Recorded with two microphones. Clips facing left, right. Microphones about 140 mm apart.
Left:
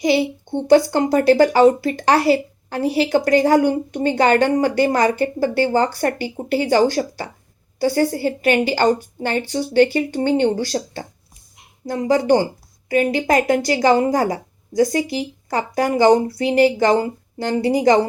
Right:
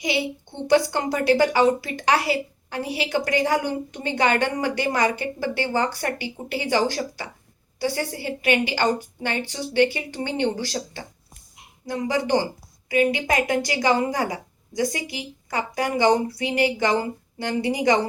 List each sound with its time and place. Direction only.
0.0 s a woman's voice: 40° left (ahead or behind)
10.5 s speech: 30° left (ahead or behind)
11.9 s a woman's voice: 40° left (ahead or behind)